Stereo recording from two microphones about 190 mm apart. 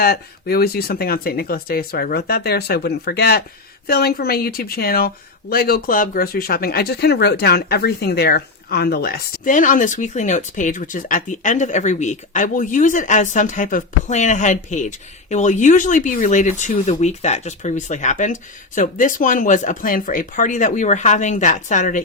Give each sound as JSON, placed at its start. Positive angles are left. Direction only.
{"t": 0.0, "sound": "speech", "side_deg": 55}